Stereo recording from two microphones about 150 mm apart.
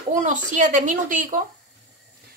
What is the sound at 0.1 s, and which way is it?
A woman's voice, 55° right (ahead or behind).